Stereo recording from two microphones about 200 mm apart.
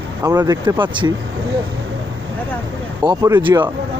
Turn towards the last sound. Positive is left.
turn(degrees=-20)  # may be behind; listen again after turning